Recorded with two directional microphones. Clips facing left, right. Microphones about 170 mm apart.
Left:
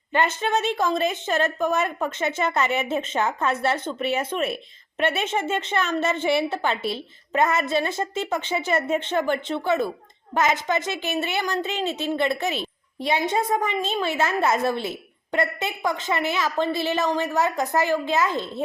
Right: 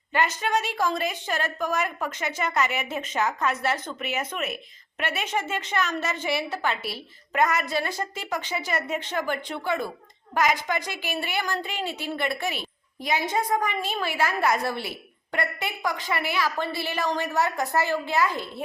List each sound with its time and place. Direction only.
0.1 s a woman's voice: 25° left (ahead or behind)